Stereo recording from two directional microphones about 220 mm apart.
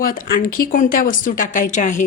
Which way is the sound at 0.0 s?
40° left (ahead or behind).